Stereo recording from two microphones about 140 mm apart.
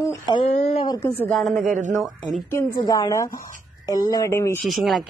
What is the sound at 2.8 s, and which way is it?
A woman's voice, 25° left (ahead or behind).